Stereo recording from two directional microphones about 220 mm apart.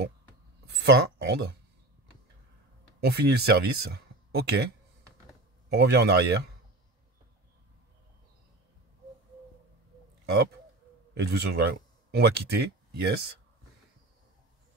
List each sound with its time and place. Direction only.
0.7 s a man's voice: 50° right (ahead or behind)
3.0 s speech: 45° right (ahead or behind)
5.7 s a man's voice: 50° right (ahead or behind)
11.1 s speech: 45° right (ahead or behind)